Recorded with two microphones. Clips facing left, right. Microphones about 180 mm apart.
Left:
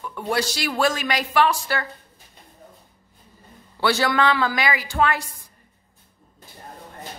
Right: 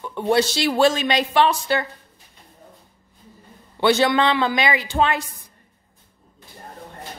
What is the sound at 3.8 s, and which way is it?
A woman's voice, 20° right (ahead or behind).